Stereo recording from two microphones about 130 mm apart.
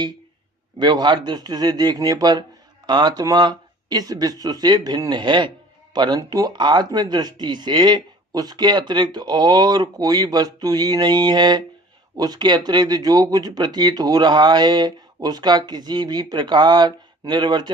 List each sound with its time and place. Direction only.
0.8 s speech: 35° right (ahead or behind)